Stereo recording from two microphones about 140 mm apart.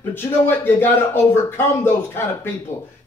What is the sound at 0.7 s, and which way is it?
Speech, 15° left (ahead or behind).